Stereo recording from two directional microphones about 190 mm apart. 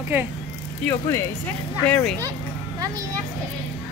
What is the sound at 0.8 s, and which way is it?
Speech, 10° left (ahead or behind).